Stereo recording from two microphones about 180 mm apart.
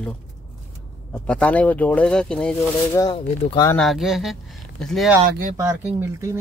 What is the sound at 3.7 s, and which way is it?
Speech, centre (ahead or behind).